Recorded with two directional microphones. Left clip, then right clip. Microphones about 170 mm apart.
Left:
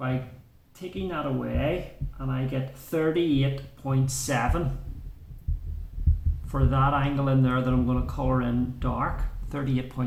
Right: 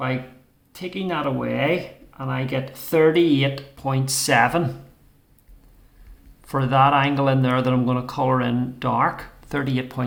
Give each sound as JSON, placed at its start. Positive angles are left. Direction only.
{"t": 0.7, "sound": "speech", "side_deg": -50}
{"t": 6.5, "sound": "speech", "side_deg": -45}